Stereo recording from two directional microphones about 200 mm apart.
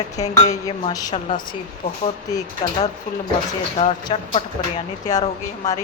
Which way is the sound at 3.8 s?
30° left (ahead or behind).